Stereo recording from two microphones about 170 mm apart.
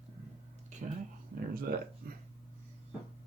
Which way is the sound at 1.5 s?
60° right (ahead or behind).